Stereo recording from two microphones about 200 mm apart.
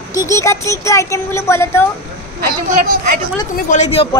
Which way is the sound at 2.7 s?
40° right (ahead or behind).